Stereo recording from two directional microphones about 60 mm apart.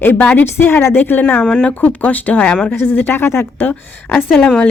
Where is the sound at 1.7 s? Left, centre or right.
Left.